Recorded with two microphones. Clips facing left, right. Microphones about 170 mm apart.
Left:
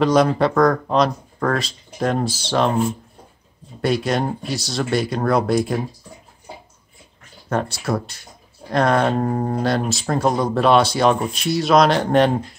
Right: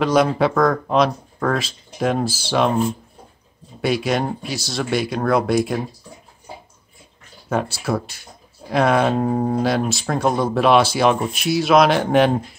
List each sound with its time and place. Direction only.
0.0 s speech: centre (ahead or behind)
3.8 s speech: centre (ahead or behind)
7.4 s speech: 5° right (ahead or behind)